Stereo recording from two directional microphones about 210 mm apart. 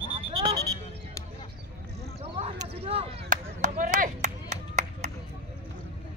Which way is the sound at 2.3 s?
30° right (ahead or behind).